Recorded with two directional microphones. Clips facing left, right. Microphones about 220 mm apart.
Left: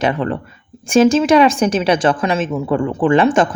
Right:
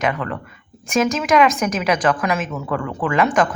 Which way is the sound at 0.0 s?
30° left (ahead or behind).